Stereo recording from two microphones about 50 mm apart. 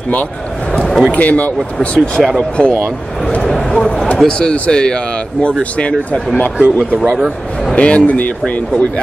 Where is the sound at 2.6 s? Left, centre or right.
Left.